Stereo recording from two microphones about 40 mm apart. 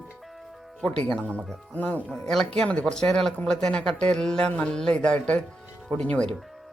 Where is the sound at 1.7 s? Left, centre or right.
Left.